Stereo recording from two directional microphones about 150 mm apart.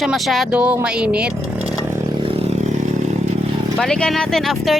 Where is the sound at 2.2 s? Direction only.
40° right (ahead or behind).